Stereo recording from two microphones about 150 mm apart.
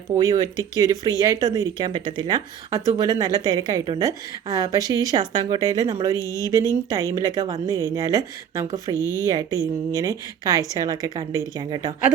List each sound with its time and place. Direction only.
0.3 s speech: 25° right (ahead or behind)
9.0 s speech: 20° left (ahead or behind)
9.2 s speech: 25° right (ahead or behind)